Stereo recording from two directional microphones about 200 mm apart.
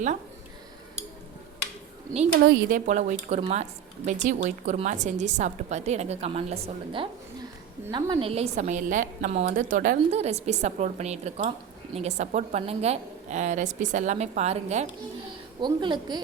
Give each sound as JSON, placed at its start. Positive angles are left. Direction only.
{"t": 2.4, "sound": "a woman's voice", "side_deg": -45}
{"t": 15.6, "sound": "a woman's voice", "side_deg": -20}